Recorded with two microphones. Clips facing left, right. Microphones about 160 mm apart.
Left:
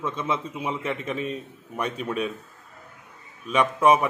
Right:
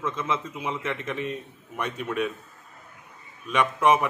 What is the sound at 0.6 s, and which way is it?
A man's voice, 10° left (ahead or behind).